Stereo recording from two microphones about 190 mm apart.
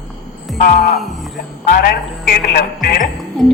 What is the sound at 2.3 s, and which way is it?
Speech, 50° left (ahead or behind).